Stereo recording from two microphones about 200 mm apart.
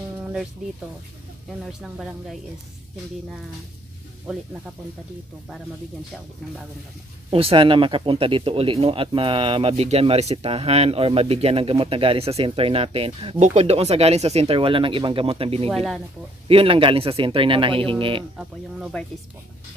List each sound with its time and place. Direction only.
0.2 s music: centre (ahead or behind)
1.7 s speech: centre (ahead or behind)
7.2 s speech: 25° right (ahead or behind)
15.7 s speech: centre (ahead or behind)
16.4 s speech: 25° right (ahead or behind)
18.4 s speech: centre (ahead or behind)